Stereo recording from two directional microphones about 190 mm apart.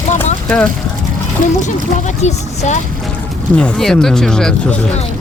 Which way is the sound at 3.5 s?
5° left (ahead or behind).